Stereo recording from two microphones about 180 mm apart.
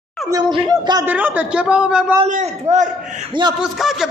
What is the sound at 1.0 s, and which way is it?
A man's voice, 10° right (ahead or behind).